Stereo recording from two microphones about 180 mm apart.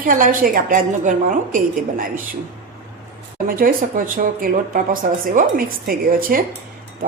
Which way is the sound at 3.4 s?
50° right (ahead or behind).